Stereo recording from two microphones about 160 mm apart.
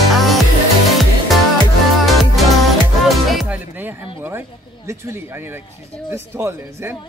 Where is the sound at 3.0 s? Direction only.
Centre (ahead or behind).